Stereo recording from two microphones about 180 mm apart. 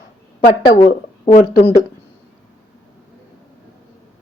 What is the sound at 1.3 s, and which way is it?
Speech, 40° left (ahead or behind).